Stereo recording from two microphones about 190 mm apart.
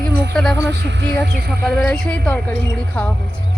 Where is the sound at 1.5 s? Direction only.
5° left (ahead or behind).